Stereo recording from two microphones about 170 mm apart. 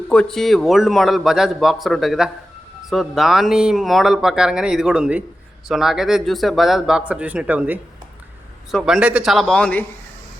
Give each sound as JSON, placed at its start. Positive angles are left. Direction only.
{"t": 0.1, "sound": "speech", "side_deg": 5}